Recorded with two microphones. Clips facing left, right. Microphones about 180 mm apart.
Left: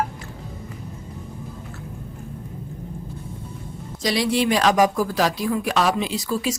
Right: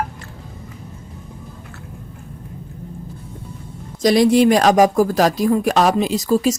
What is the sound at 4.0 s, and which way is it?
Speech, 45° right (ahead or behind).